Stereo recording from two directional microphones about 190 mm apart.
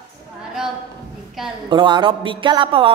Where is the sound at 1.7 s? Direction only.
25° right (ahead or behind).